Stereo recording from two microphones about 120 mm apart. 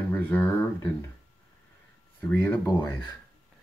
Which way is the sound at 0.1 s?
15° left (ahead or behind).